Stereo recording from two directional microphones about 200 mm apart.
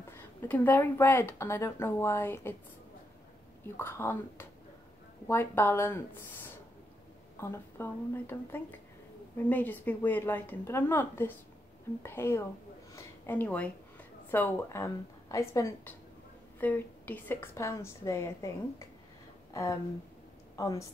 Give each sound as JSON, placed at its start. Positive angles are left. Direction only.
{"t": 0.1, "sound": "a woman's voice", "side_deg": 10}
{"t": 3.6, "sound": "a woman's voice", "side_deg": 10}
{"t": 12.9, "sound": "a sound", "side_deg": 10}
{"t": 14.3, "sound": "a woman's voice", "side_deg": 10}
{"t": 19.5, "sound": "a woman's voice", "side_deg": 15}